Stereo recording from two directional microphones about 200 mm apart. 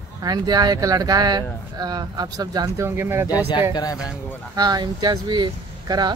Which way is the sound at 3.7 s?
20° left (ahead or behind).